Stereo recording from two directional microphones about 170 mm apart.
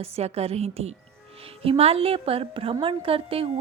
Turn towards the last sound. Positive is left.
turn(degrees=-35)  # may be behind; listen again after turning